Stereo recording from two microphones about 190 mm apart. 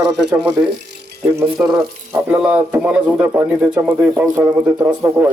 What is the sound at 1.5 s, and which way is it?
Speech, centre (ahead or behind).